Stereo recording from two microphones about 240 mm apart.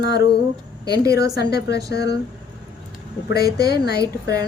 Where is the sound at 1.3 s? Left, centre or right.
Left.